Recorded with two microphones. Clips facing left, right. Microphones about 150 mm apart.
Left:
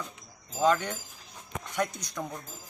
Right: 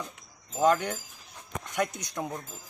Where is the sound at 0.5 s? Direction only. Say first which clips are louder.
Right 1 dB; 5° right (ahead or behind).